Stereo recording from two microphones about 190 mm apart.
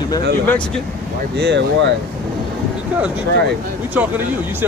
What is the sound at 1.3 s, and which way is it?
Speech, 65° right (ahead or behind).